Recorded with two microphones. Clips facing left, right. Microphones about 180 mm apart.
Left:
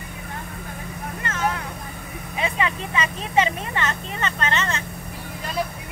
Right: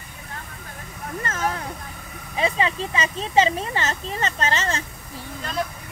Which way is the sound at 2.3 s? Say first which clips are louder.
Right 2 dB; 30° right (ahead or behind).